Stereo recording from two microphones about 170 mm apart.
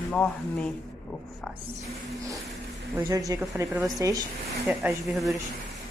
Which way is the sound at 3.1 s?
20° right (ahead or behind).